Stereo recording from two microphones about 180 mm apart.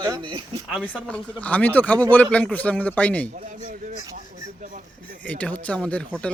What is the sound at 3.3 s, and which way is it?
Speech, 50° right (ahead or behind).